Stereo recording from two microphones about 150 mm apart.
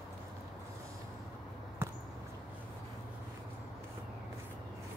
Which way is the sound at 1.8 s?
15° right (ahead or behind).